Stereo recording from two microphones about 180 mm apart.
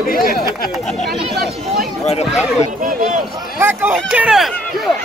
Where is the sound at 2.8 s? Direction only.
45° right (ahead or behind).